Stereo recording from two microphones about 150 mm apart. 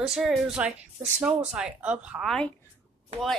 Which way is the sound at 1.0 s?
15° right (ahead or behind).